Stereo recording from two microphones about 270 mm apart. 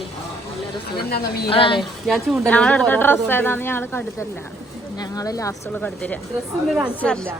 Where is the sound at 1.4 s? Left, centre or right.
Centre.